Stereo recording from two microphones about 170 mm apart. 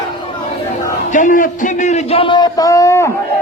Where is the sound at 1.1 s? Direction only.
50° left (ahead or behind); by 3.1 s 20° left (ahead or behind).